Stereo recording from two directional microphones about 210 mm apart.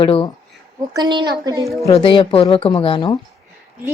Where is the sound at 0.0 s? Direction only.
25° left (ahead or behind).